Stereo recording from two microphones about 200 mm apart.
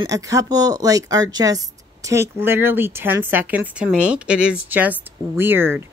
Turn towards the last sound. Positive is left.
turn(degrees=-10)  # may be behind; listen again after turning